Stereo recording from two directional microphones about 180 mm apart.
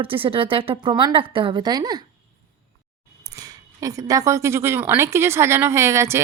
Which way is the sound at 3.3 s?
20° right (ahead or behind).